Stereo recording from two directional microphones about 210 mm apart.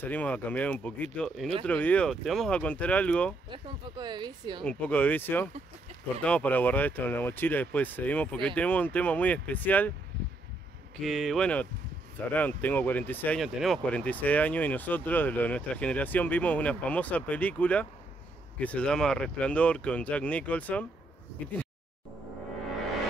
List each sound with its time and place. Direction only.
0.0 s speech: 5° left (ahead or behind)
3.4 s speech: 20° right (ahead or behind)
4.6 s speech: 5° left (ahead or behind)
11.0 s speech: centre (ahead or behind)